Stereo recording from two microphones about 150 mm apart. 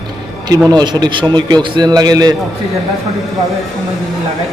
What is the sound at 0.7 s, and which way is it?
A man's voice, 30° right (ahead or behind).